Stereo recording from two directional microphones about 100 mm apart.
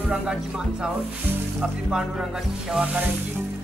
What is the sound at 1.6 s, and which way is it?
Speech, 5° right (ahead or behind).